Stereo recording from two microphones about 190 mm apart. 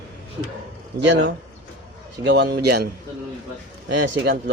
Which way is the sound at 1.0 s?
70° right (ahead or behind).